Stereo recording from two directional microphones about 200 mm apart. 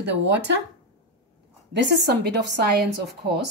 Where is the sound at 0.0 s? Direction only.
60° right (ahead or behind).